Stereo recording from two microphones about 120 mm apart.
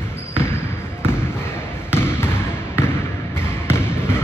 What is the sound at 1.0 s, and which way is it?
Basketball bounce, 20° left (ahead or behind).